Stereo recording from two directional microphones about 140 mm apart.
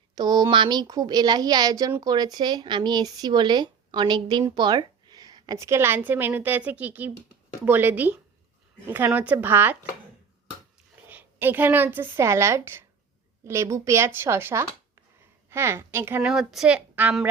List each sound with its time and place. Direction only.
0.2 s a woman's voice: 30° right (ahead or behind); by 9.7 s 15° right (ahead or behind)
11.1 s a woman's voice: 15° right (ahead or behind)
16.2 s a woman's voice: 5° right (ahead or behind)